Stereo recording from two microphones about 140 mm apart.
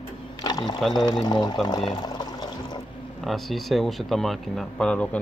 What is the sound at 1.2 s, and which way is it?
Speech, 30° left (ahead or behind).